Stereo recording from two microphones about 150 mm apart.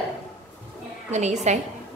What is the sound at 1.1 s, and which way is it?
Speech, 50° right (ahead or behind).